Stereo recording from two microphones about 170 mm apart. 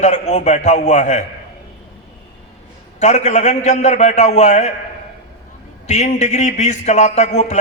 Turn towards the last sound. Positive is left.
turn(degrees=45)  # may be behind; listen again after turning